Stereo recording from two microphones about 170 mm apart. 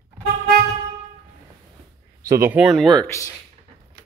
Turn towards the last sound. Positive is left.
turn(degrees=15)  # may be behind; listen again after turning